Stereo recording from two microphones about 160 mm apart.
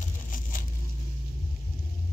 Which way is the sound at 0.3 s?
55° left (ahead or behind).